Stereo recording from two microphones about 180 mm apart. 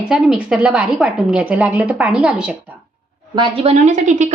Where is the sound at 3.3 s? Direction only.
30° right (ahead or behind).